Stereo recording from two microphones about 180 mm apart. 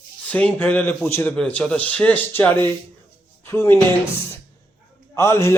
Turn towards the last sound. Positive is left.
turn(degrees=15)  # may be behind; listen again after turning